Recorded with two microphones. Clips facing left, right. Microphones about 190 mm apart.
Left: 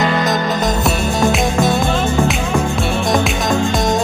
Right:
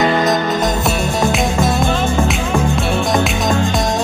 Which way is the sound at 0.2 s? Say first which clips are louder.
Right 2 dB; centre (ahead or behind).